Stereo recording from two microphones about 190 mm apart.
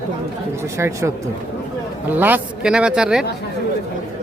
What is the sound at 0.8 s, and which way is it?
Speech, 15° right (ahead or behind).